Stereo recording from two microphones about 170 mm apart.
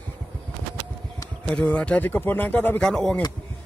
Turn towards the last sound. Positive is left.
turn(degrees=5)  # may be behind; listen again after turning